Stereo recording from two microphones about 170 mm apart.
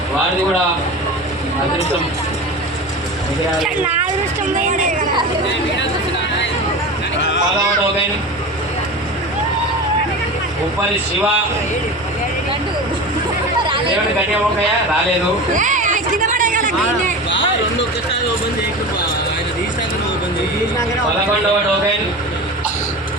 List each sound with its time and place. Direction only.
15.5 s hubbub: 50° right (ahead or behind)